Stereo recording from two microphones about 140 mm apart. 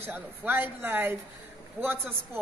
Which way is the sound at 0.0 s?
15° right (ahead or behind).